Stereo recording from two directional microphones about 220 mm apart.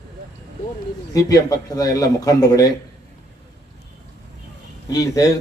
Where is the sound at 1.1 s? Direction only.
15° left (ahead or behind).